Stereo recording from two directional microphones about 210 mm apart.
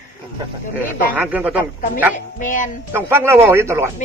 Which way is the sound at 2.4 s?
40° left (ahead or behind).